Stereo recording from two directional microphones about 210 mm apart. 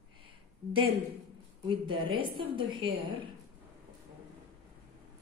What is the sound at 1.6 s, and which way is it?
A woman's voice, 25° right (ahead or behind).